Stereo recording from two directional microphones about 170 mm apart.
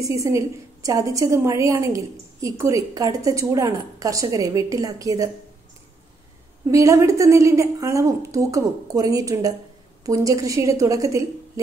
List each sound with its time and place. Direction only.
0.0 s a woman's voice: 20° right (ahead or behind)
6.7 s a woman's voice: 20° right (ahead or behind)